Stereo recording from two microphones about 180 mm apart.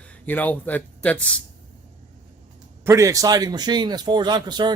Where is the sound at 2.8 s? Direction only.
15° right (ahead or behind).